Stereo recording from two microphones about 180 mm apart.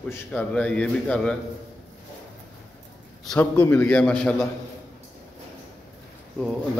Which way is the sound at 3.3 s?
10° left (ahead or behind).